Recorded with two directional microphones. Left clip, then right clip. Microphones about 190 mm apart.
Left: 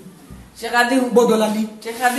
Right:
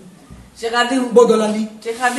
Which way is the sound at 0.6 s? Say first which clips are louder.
Even; 10° left (ahead or behind).